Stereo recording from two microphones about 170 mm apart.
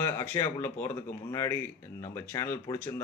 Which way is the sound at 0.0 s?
15° left (ahead or behind).